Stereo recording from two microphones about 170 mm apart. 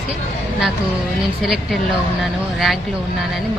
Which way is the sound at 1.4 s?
Centre (ahead or behind).